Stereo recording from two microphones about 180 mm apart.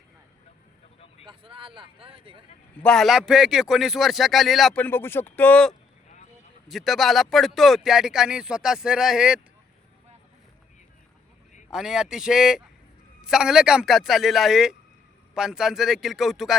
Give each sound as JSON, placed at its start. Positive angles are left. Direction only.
{"t": 1.3, "sound": "speech", "side_deg": -30}
{"t": 2.8, "sound": "speech", "side_deg": 0}
{"t": 11.7, "sound": "speech", "side_deg": -5}